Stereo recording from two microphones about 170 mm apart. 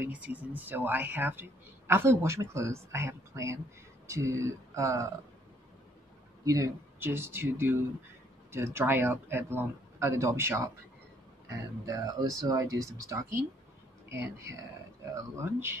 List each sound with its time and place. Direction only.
0.0 s speech: 10° right (ahead or behind)
6.4 s speech: 20° right (ahead or behind)